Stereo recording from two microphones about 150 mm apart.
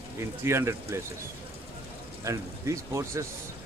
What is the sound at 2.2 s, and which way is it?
Speech, 20° right (ahead or behind).